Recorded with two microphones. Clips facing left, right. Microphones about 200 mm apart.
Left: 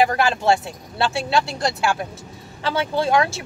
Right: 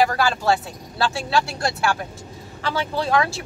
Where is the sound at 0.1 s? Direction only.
20° left (ahead or behind).